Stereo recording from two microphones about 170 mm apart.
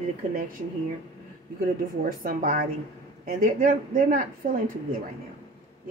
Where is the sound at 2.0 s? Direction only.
55° right (ahead or behind).